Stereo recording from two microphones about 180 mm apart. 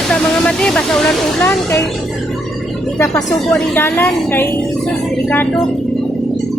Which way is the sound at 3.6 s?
10° left (ahead or behind).